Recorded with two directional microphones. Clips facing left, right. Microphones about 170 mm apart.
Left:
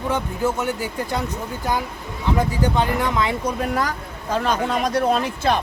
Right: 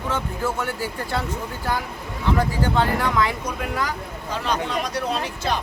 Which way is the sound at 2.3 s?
20° left (ahead or behind).